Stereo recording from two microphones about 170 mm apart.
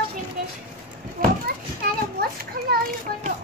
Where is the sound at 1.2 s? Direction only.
60° right (ahead or behind).